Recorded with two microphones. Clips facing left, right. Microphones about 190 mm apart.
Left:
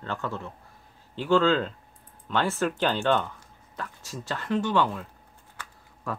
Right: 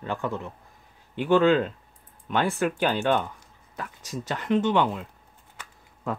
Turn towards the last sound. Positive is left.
turn(degrees=-20)  # may be behind; listen again after turning